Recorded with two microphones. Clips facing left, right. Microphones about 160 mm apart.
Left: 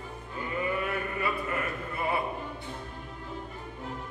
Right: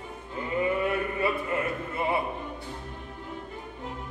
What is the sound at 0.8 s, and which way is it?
Chant, 25° right (ahead or behind).